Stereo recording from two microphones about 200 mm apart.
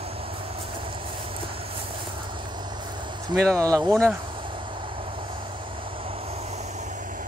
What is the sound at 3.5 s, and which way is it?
Speech, 15° right (ahead or behind).